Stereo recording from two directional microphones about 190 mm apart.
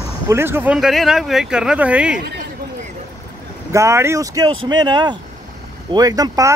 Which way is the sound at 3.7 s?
15° right (ahead or behind).